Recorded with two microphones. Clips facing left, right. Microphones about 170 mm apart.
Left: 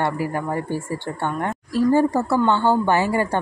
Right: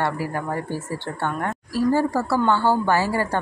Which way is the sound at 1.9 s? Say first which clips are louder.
Left 4 dB; 20° left (ahead or behind).